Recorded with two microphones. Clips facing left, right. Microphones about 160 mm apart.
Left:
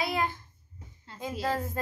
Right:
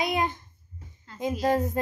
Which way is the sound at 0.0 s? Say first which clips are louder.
Right 3 dB; 20° right (ahead or behind).